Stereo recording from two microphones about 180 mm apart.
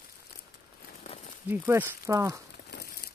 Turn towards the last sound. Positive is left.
turn(degrees=70)  # may be behind; listen again after turning